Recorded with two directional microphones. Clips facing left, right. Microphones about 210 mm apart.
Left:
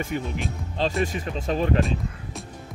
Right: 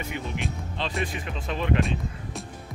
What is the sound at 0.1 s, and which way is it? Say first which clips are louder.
Speech: left 3 dB; 40° left (ahead or behind).